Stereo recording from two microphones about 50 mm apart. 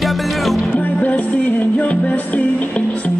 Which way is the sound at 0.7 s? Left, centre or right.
Left.